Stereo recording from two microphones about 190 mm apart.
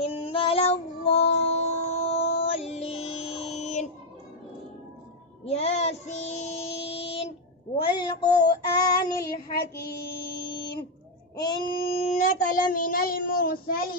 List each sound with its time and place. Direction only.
0.2 s female singing: 30° left (ahead or behind)
1.4 s music: 35° left (ahead or behind)
5.4 s child singing: 35° left (ahead or behind)
9.2 s child singing: 55° left (ahead or behind)
10.3 s a sound: 60° left (ahead or behind)
11.3 s child singing: 25° left (ahead or behind); by 13.9 s 50° left (ahead or behind)